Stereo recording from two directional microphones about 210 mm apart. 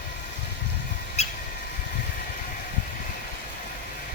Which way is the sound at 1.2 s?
30° left (ahead or behind).